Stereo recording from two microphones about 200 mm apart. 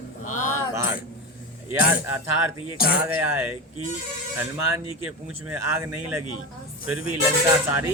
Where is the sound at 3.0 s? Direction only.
10° right (ahead or behind).